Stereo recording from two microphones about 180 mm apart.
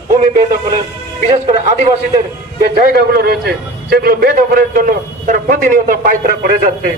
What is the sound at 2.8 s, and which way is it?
A man's voice, 55° right (ahead or behind).